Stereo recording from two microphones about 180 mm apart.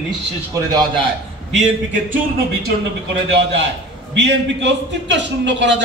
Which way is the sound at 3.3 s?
75° right (ahead or behind).